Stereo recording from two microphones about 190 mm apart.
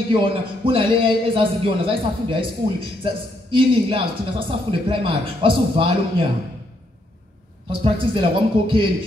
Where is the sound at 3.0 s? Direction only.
25° right (ahead or behind).